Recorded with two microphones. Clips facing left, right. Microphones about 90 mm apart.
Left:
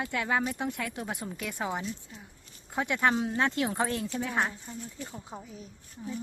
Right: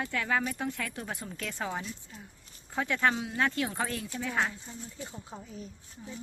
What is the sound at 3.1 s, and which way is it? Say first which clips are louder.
Speech: left 2 dB; 35° left (ahead or behind).